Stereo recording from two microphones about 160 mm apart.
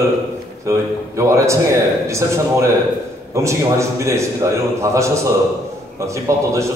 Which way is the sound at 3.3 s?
20° right (ahead or behind).